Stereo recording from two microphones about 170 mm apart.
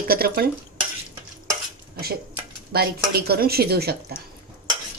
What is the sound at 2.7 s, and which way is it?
Speech, 65° right (ahead or behind).